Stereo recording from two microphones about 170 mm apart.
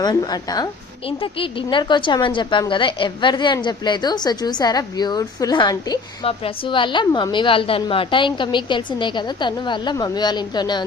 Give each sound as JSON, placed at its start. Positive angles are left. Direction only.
{"t": 0.0, "sound": "a woman's voice", "side_deg": 20}